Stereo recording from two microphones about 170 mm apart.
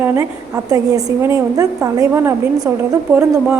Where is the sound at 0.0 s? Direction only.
15° right (ahead or behind).